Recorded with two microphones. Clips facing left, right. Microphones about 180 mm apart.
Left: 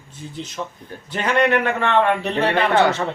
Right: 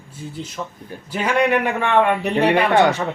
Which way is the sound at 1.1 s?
10° right (ahead or behind).